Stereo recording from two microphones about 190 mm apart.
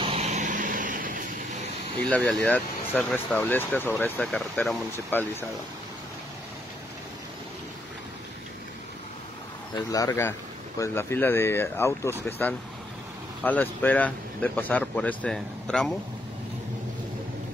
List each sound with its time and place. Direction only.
0.0 s vehicle: 35° right (ahead or behind)
2.0 s speech: 5° left (ahead or behind)
9.8 s speech: 20° left (ahead or behind); by 15.9 s 5° left (ahead or behind)